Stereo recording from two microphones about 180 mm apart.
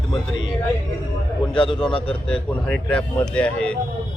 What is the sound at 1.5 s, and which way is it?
Speech, 30° left (ahead or behind).